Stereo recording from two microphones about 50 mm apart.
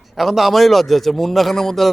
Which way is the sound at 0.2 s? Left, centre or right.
Centre.